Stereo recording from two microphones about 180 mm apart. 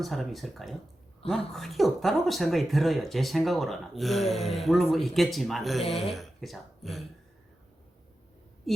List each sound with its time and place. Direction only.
0.0 s speech: centre (ahead or behind)